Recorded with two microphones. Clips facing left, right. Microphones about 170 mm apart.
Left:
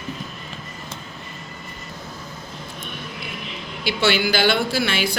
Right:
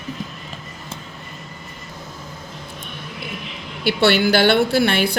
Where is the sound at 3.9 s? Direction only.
60° right (ahead or behind).